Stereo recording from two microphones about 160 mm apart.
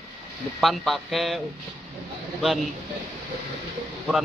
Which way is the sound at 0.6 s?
Centre (ahead or behind).